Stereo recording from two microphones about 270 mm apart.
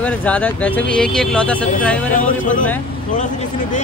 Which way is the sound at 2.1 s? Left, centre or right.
Left.